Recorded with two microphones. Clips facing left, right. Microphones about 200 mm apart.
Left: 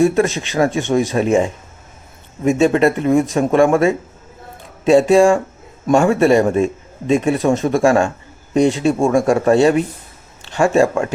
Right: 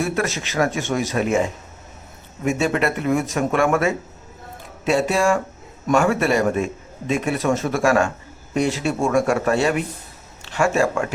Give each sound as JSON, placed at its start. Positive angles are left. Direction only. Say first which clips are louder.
{"t": 0.0, "sound": "speech", "louder": "left 9 dB", "side_deg": 30}